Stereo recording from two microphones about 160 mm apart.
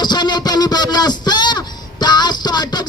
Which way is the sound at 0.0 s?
25° left (ahead or behind).